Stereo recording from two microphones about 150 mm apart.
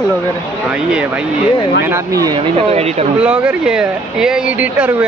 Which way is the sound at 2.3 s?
45° right (ahead or behind).